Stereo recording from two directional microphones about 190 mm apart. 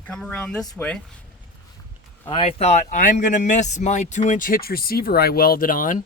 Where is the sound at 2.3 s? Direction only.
30° left (ahead or behind).